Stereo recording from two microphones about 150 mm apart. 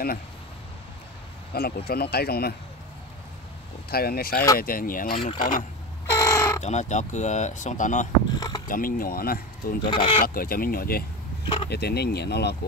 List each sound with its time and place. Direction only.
1.5 s speech: 90° left
3.9 s speech: 90° left; by 5.7 s 65° left (ahead or behind)
6.1 s a sound: 20° left (ahead or behind)
6.6 s speech: 50° left (ahead or behind)
8.4 s mechanisms: 25° left (ahead or behind)
8.6 s speech: 70° left (ahead or behind)
9.8 s speech: 35° left (ahead or behind)
10.2 s speech: 75° left (ahead or behind)
11.4 s speech: 35° left (ahead or behind)
11.7 s speech: 90° left